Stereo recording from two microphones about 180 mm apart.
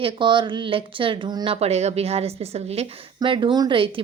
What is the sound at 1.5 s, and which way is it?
Speech, 35° right (ahead or behind).